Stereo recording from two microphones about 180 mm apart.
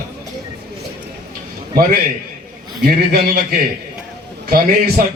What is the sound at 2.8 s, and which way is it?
Speech, 55° right (ahead or behind).